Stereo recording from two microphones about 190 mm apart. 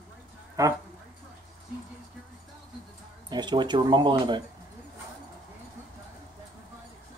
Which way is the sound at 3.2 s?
20° right (ahead or behind).